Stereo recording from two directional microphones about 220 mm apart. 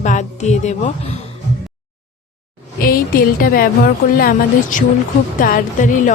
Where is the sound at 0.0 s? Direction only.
35° left (ahead or behind).